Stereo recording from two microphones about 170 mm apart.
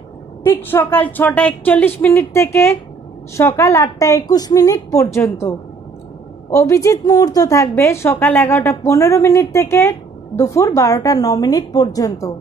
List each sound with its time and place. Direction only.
0.4 s a woman's voice: 15° left (ahead or behind)
6.5 s a woman's voice: 20° left (ahead or behind)